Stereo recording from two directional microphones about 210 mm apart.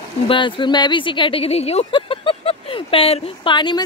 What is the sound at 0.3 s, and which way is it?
Speech, 25° left (ahead or behind).